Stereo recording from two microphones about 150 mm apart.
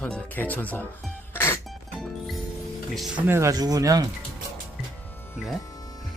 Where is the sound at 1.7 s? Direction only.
Centre (ahead or behind).